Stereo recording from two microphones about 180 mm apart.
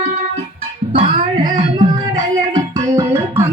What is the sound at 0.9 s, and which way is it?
Music, 30° right (ahead or behind).